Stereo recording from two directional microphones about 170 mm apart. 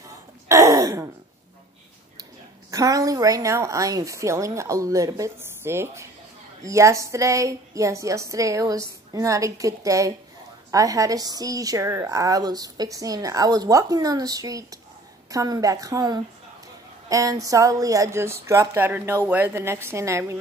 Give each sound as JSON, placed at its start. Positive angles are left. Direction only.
{"t": 0.5, "sound": "throat clearing", "side_deg": -20}
{"t": 2.7, "sound": "a woman's voice", "side_deg": -20}